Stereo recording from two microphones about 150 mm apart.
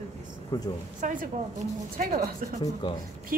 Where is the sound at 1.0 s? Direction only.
55° right (ahead or behind).